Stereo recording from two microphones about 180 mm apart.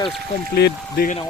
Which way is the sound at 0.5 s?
60° left (ahead or behind).